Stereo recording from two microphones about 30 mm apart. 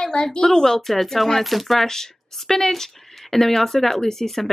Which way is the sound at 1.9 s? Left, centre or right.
Centre.